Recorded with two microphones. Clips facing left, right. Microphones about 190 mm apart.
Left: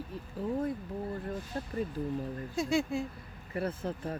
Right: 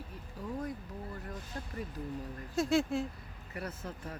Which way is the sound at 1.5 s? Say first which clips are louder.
Left 4 dB; 30° left (ahead or behind).